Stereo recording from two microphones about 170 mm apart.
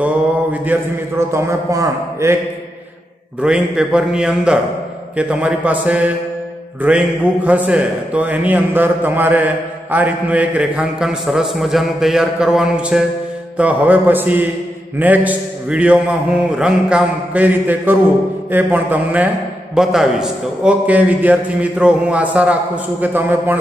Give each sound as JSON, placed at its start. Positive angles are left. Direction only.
{"t": 0.0, "sound": "a man's voice", "side_deg": -10}
{"t": 3.3, "sound": "a man's voice", "side_deg": -5}